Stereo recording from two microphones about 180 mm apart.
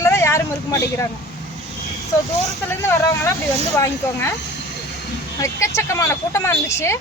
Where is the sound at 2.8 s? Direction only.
15° left (ahead or behind).